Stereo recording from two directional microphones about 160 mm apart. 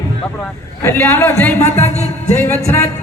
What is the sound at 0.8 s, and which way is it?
A man's voice, 15° left (ahead or behind).